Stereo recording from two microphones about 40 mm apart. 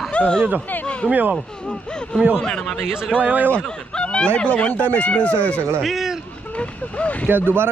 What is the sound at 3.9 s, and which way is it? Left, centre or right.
Speech, left.